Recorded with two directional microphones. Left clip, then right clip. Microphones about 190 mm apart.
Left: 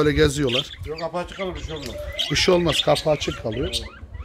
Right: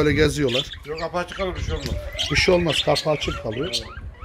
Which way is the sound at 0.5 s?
10° right (ahead or behind).